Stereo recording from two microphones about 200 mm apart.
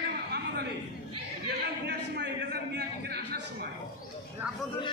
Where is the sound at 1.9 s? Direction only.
55° right (ahead or behind).